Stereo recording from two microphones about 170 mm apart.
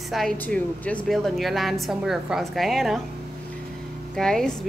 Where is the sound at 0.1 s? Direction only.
5° left (ahead or behind).